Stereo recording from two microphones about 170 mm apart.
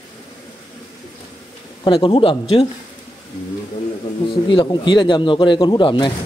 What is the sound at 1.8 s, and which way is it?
Speech, 30° left (ahead or behind).